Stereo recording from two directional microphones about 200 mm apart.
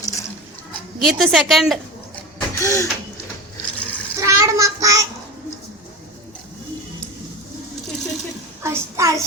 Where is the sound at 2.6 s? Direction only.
15° left (ahead or behind).